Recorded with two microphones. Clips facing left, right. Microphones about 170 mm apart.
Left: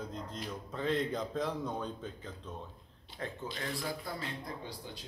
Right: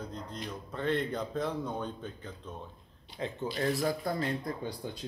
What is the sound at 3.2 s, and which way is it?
Speech, 15° right (ahead or behind).